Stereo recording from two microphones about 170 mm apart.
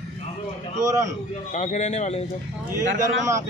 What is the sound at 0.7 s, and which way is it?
Speech, 20° right (ahead or behind).